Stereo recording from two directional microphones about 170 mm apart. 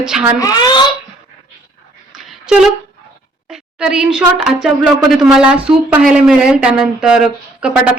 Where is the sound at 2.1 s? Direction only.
Centre (ahead or behind).